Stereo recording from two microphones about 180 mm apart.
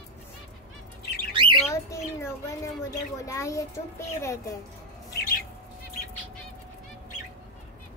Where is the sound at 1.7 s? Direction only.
15° left (ahead or behind).